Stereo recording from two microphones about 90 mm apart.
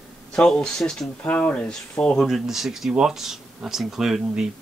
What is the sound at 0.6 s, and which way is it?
Speech, 5° left (ahead or behind).